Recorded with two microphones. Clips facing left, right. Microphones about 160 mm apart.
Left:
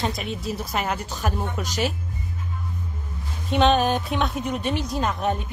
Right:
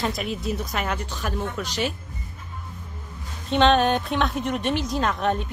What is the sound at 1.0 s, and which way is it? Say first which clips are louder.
Speech: left 1 dB; 40° left (ahead or behind).